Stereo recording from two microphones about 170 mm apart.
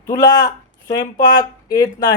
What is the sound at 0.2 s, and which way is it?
Speech, 20° left (ahead or behind).